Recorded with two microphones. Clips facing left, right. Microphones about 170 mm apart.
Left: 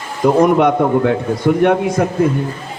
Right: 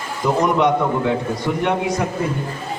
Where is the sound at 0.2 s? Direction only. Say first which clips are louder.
Left 7 dB; 50° left (ahead or behind).